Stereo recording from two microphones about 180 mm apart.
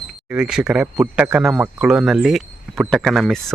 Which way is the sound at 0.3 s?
5° right (ahead or behind).